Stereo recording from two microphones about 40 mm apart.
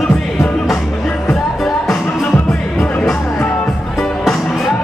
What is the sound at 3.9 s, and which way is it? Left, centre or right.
Music, centre.